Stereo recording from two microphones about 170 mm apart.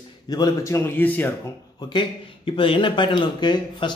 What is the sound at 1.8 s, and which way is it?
Speech, 25° left (ahead or behind).